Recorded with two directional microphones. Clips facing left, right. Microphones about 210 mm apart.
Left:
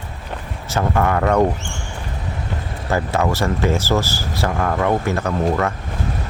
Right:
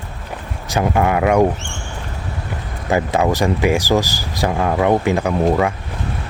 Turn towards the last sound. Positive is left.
turn(degrees=-15)  # may be behind; listen again after turning